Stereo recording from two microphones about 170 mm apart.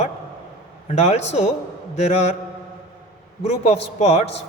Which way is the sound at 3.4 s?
35° left (ahead or behind).